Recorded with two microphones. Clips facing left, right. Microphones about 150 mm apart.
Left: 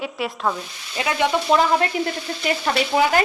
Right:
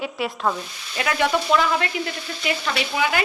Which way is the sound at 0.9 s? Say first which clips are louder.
Left 1 dB; 20° left (ahead or behind).